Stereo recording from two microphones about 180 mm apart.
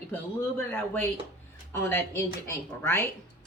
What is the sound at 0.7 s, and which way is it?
Speech, 10° left (ahead or behind).